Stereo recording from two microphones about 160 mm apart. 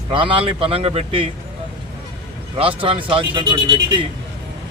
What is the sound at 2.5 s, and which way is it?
Speech, 35° right (ahead or behind).